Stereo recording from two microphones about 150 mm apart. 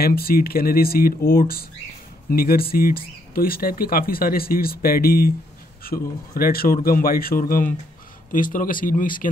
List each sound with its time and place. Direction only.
0.0 s a man's voice: 90° left; by 9.3 s 65° left (ahead or behind)